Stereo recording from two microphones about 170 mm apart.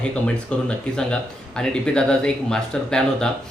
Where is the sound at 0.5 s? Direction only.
5° left (ahead or behind).